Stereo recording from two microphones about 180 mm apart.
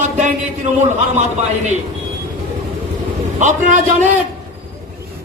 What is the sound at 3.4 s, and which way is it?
Speech, 45° right (ahead or behind).